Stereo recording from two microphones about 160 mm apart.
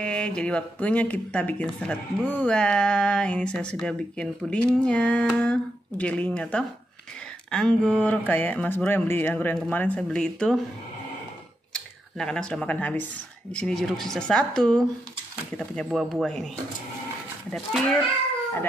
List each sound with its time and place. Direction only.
0.0 s speech: 5° left (ahead or behind)
11.7 s a woman's voice: 5° left (ahead or behind)